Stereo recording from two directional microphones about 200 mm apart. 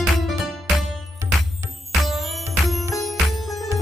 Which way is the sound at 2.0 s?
Centre (ahead or behind).